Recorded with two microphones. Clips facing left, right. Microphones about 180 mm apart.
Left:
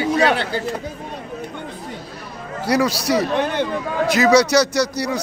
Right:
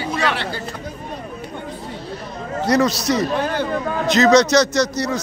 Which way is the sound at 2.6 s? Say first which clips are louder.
Right 1 dB; 10° left (ahead or behind).